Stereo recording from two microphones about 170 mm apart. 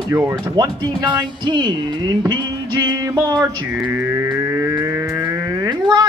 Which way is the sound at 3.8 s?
15° right (ahead or behind).